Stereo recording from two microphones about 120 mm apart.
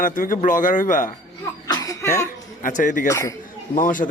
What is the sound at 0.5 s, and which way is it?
Speech, 90° left.